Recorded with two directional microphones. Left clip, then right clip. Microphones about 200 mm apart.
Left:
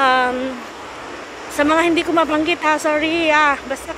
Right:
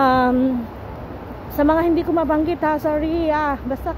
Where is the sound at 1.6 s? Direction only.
15° right (ahead or behind).